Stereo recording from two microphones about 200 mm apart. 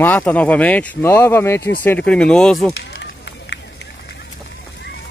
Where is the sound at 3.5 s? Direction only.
60° left (ahead or behind).